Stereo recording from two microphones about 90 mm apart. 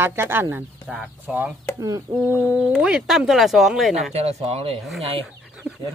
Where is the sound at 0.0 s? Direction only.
25° right (ahead or behind).